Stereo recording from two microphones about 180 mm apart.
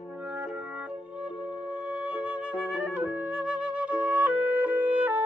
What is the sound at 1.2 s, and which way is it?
Music, 25° left (ahead or behind).